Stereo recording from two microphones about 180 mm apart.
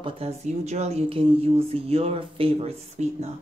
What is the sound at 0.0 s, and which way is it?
Speech, 35° right (ahead or behind).